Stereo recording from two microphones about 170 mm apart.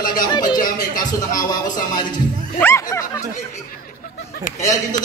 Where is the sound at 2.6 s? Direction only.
15° left (ahead or behind).